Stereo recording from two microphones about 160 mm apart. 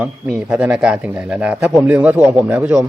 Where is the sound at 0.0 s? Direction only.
5° right (ahead or behind).